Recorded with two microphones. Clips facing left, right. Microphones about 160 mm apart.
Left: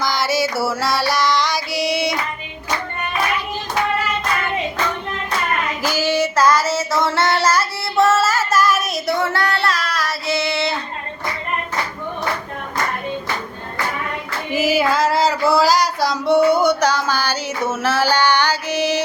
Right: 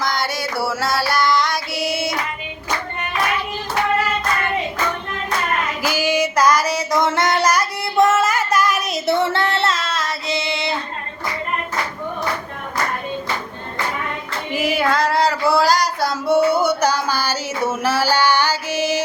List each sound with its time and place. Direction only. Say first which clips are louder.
0.0 s music: left 3 dB; centre (ahead or behind)
5.8 s female singing: left 1 dB; 10° right (ahead or behind)
14.5 s female singing: left 2 dB; centre (ahead or behind)